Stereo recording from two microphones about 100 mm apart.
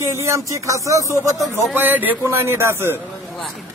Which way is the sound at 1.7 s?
20° right (ahead or behind).